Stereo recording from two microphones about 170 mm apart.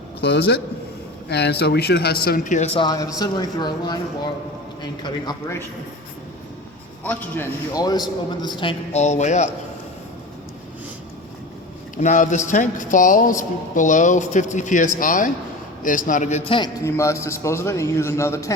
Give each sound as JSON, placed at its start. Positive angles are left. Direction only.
{"t": 0.2, "sound": "a man's voice", "side_deg": 85}
{"t": 2.7, "sound": "speech", "side_deg": 25}
{"t": 7.0, "sound": "a man's voice", "side_deg": 10}
{"t": 7.7, "sound": "speech", "side_deg": 20}
{"t": 8.9, "sound": "a man's voice", "side_deg": 40}
{"t": 11.9, "sound": "a man's voice", "side_deg": 45}
{"t": 16.8, "sound": "a man's voice", "side_deg": 15}